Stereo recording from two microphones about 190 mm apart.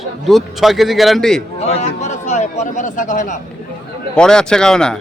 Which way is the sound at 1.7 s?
35° left (ahead or behind).